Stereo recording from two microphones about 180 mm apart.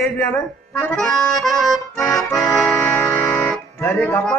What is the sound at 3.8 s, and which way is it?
Speech, 10° left (ahead or behind).